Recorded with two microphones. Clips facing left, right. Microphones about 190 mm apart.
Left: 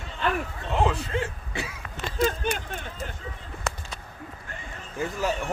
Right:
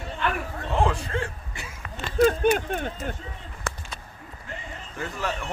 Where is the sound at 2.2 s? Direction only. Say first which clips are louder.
Right 7 dB; 55° right (ahead or behind).